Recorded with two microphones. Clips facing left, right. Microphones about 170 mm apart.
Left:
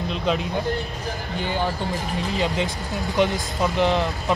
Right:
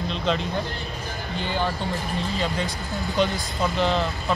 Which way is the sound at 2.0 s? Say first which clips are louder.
Left 4 dB; 20° left (ahead or behind).